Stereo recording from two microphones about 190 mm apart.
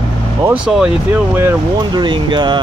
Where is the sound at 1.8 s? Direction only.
20° right (ahead or behind).